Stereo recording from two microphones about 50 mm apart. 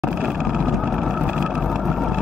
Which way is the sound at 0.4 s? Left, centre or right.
Centre.